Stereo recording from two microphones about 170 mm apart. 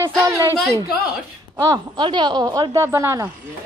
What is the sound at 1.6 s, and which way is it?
A woman's voice, 25° right (ahead or behind).